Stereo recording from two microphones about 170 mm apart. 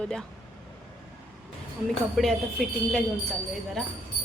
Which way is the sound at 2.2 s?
Centre (ahead or behind).